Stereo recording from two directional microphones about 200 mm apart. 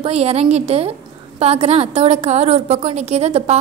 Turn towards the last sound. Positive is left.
turn(degrees=-30)  # may be behind; listen again after turning